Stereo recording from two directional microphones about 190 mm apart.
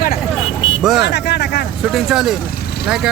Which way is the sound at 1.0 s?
65° left (ahead or behind).